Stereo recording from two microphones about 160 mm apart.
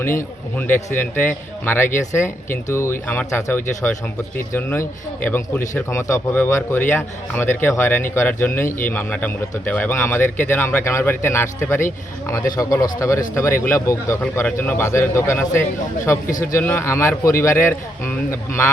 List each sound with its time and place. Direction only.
0.0 s a man's voice: 15° left (ahead or behind)